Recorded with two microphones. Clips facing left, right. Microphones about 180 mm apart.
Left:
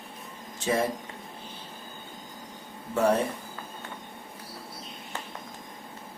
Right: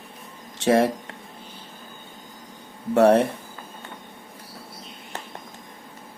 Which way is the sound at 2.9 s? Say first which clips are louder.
Right 8 dB; 75° right (ahead or behind).